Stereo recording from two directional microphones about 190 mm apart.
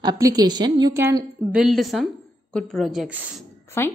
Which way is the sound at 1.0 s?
10° right (ahead or behind).